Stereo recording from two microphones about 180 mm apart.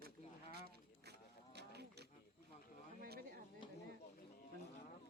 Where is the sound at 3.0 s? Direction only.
60° right (ahead or behind).